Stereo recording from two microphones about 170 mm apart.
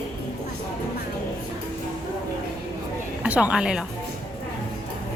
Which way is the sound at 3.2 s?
5° right (ahead or behind).